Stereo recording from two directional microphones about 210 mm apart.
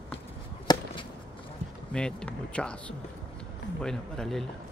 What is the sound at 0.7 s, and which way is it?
Chop, 20° left (ahead or behind).